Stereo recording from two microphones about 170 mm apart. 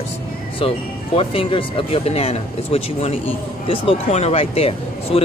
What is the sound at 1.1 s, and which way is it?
Speech, 30° left (ahead or behind).